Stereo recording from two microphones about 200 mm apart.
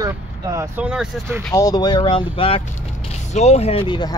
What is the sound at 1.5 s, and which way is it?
Speech, 20° left (ahead or behind).